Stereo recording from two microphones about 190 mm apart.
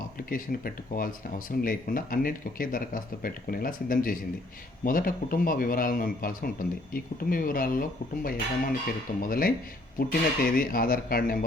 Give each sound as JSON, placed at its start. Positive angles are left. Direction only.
{"t": 0.3, "sound": "speech", "side_deg": 50}